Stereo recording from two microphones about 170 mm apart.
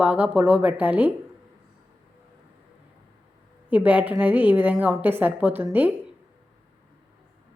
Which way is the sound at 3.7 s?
10° right (ahead or behind).